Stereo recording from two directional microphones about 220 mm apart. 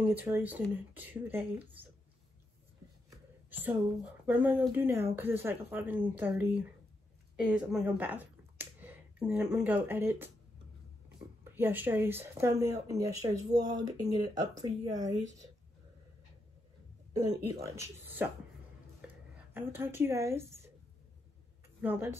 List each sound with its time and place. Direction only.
0.1 s speech: 10° right (ahead or behind)
3.4 s speech: 10° right (ahead or behind)
11.4 s speech: 10° right (ahead or behind)
17.2 s speech: 15° right (ahead or behind)
18.9 s a sound: 10° right (ahead or behind)
21.8 s speech: 10° right (ahead or behind)